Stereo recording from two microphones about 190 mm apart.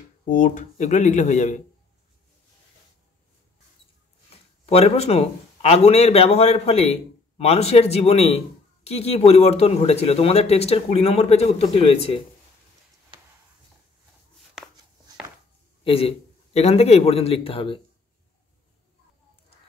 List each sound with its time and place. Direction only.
0.3 s a man's voice: 40° left (ahead or behind)
4.6 s a man's voice: 35° left (ahead or behind)
15.8 s a man's voice: 30° left (ahead or behind)